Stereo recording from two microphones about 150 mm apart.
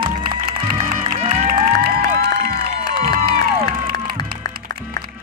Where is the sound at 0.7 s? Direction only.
40° right (ahead or behind).